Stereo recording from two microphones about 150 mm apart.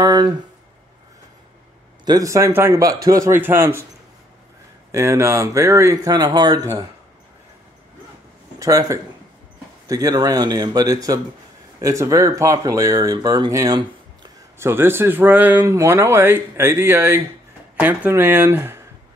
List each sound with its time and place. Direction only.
0.0 s speech: 25° right (ahead or behind)
2.0 s speech: 20° right (ahead or behind)
4.9 s speech: 20° right (ahead or behind)
8.5 s speech: 20° right (ahead or behind)
14.6 s speech: 15° right (ahead or behind)